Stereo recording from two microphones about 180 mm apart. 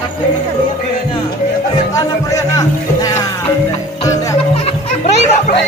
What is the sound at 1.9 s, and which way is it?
Music, 20° left (ahead or behind).